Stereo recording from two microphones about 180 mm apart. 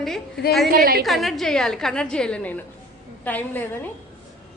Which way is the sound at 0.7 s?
55° right (ahead or behind).